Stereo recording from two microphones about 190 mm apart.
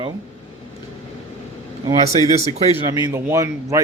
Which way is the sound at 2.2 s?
25° left (ahead or behind).